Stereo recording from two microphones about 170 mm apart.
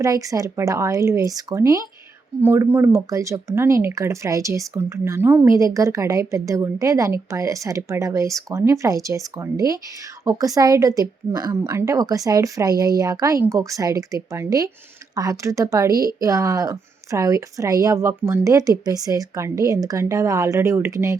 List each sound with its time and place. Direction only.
0.0 s speech: 20° right (ahead or behind)